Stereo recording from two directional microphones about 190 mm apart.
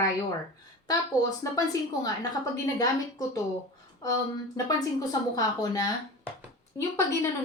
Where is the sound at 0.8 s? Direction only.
20° left (ahead or behind).